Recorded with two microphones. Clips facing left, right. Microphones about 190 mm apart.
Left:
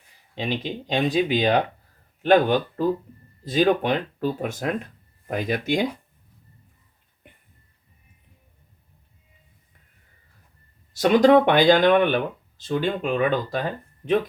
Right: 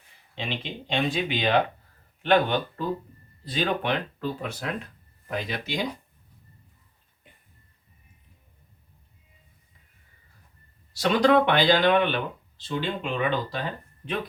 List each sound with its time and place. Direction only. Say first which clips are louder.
0.3 s speech: left 6 dB; 40° left (ahead or behind)
10.9 s speech: left 5 dB; 45° left (ahead or behind)